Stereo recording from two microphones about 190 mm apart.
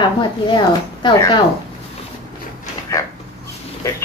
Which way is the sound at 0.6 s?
25° left (ahead or behind).